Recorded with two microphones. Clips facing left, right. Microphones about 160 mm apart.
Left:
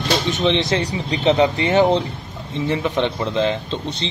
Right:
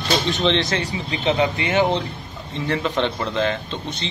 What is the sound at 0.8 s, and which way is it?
Speech, 30° left (ahead or behind).